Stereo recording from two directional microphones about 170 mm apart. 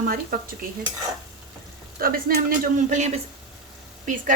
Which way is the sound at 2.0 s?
60° right (ahead or behind).